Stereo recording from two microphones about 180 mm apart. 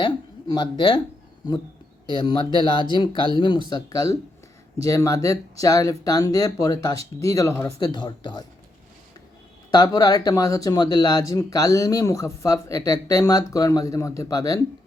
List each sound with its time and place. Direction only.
0.5 s speech: 25° left (ahead or behind)
2.0 s speech: 25° left (ahead or behind)
9.7 s speech: 20° left (ahead or behind)